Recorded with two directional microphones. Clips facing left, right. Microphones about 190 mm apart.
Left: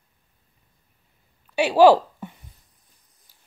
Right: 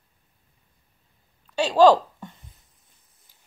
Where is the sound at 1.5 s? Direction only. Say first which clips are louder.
Left 2 dB; 10° left (ahead or behind).